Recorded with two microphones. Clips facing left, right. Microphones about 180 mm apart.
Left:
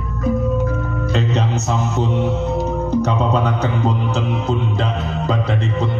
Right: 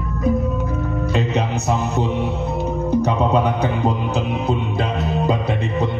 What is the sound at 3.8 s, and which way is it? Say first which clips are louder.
Music: even; 15° right (ahead or behind).